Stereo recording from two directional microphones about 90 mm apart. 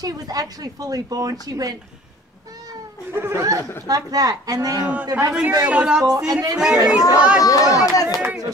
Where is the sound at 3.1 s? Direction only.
30° right (ahead or behind).